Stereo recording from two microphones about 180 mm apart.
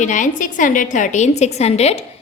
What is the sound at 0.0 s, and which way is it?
A woman's voice, 45° left (ahead or behind).